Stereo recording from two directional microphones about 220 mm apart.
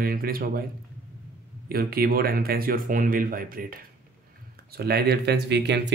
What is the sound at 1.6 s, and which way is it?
Speech, 45° right (ahead or behind).